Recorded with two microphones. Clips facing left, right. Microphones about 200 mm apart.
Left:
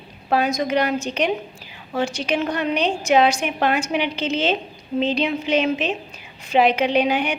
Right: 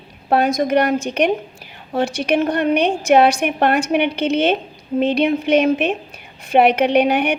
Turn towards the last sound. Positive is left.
turn(degrees=-60)  # may be behind; listen again after turning